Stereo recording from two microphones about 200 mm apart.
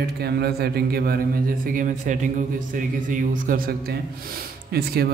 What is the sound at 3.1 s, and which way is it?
Mantra, 45° right (ahead or behind).